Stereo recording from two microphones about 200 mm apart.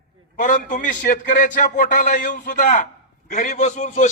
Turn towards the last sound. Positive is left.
turn(degrees=35)  # may be behind; listen again after turning